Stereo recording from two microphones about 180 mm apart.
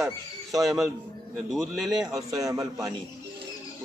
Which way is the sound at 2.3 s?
20° right (ahead or behind).